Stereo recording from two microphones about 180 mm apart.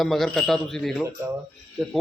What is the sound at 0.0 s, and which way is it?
Speech, centre (ahead or behind).